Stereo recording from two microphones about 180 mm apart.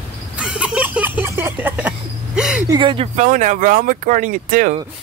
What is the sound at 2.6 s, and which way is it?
Speech, 25° right (ahead or behind).